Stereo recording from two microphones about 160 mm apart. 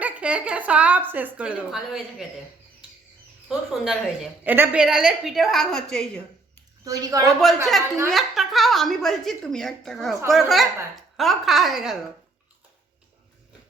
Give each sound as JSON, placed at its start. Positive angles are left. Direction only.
{"t": 0.0, "sound": "a woman's voice", "side_deg": -5}
{"t": 3.8, "sound": "a woman's voice", "side_deg": -5}
{"t": 6.8, "sound": "a woman's voice", "side_deg": -20}
{"t": 7.3, "sound": "a woman's voice", "side_deg": 0}